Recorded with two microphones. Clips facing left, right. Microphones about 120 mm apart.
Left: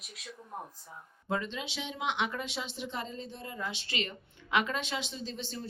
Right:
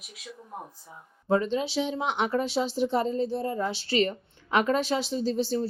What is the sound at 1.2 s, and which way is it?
Speech, 35° right (ahead or behind).